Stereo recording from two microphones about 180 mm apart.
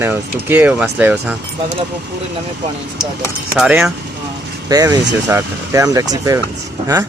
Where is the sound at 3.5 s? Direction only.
5° right (ahead or behind).